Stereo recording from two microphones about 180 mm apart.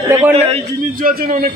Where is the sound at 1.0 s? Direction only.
50° right (ahead or behind).